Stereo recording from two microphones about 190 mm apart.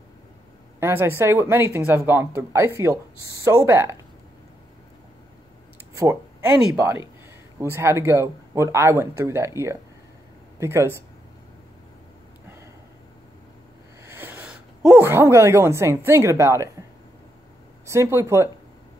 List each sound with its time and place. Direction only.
0.7 s speech: 10° right (ahead or behind)
6.7 s speech: 15° right (ahead or behind)
14.0 s speech: 10° right (ahead or behind)
17.8 s speech: 15° right (ahead or behind)